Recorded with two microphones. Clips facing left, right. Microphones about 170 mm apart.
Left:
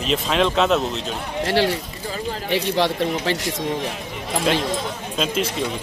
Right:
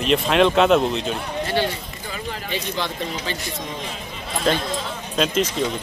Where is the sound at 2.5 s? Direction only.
70° left (ahead or behind).